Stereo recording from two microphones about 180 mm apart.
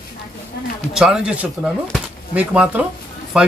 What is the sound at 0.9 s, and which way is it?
Speech, 5° right (ahead or behind).